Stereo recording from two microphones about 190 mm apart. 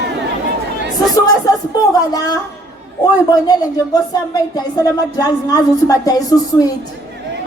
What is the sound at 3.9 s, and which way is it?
Speech, 20° left (ahead or behind).